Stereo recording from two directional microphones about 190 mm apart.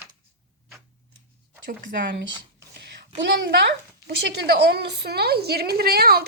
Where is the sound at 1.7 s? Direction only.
65° right (ahead or behind).